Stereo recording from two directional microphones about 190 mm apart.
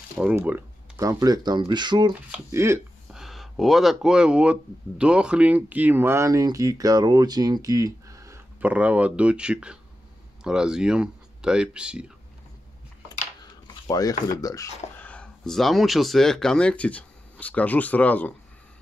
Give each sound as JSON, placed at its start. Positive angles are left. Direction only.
{"t": 0.2, "sound": "speech", "side_deg": -10}
{"t": 3.1, "sound": "speech", "side_deg": 0}
{"t": 13.4, "sound": "speech", "side_deg": 20}